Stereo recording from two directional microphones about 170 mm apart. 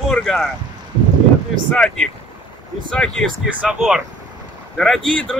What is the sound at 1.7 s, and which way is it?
Speech, 5° left (ahead or behind).